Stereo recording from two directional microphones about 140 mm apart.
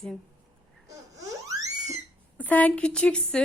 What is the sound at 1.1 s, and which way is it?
Theremin, 25° right (ahead or behind).